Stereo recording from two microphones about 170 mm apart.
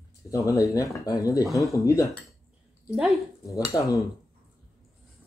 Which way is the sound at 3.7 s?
20° left (ahead or behind).